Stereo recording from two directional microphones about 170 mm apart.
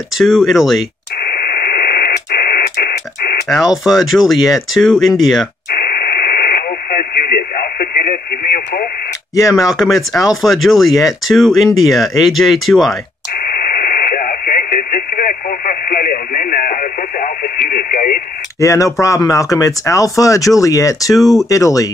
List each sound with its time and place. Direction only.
0.2 s speech: centre (ahead or behind)
1.2 s radio: 60° left (ahead or behind)
3.4 s speech: centre (ahead or behind)
5.7 s radio: 60° left (ahead or behind)
9.3 s speech: 20° left (ahead or behind)
9.6 s speech: centre (ahead or behind)
13.5 s radio: 55° left (ahead or behind)
18.6 s speech: 20° left (ahead or behind)